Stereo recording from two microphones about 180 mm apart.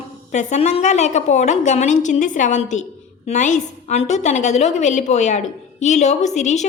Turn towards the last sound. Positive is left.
turn(degrees=40)  # may be behind; listen again after turning